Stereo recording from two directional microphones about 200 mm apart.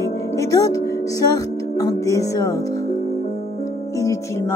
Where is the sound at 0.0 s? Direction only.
15° left (ahead or behind).